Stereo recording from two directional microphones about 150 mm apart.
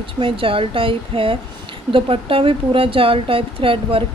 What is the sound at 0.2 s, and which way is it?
Speech, 35° right (ahead or behind).